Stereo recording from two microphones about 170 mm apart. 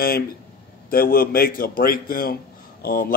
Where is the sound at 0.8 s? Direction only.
60° left (ahead or behind).